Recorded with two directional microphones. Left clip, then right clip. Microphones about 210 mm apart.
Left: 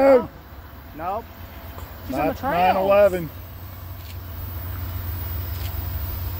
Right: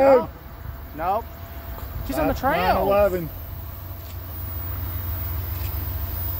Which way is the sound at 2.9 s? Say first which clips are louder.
Left 4 dB; 30° left (ahead or behind).